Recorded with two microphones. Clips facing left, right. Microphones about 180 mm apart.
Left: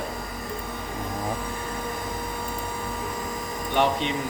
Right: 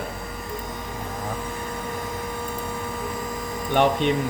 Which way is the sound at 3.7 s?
55° right (ahead or behind).